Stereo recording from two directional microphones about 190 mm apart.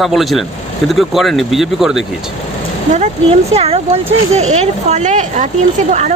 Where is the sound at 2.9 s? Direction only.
35° right (ahead or behind).